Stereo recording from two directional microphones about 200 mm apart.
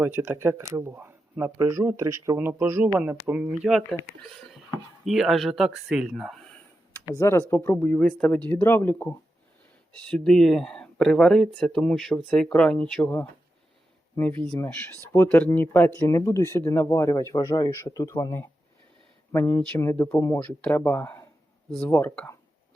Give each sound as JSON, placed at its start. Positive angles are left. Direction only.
{"t": 0.0, "sound": "speech", "side_deg": -10}
{"t": 7.0, "sound": "speech", "side_deg": 15}